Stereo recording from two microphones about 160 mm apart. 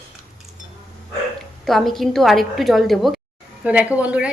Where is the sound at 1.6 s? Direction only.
Centre (ahead or behind).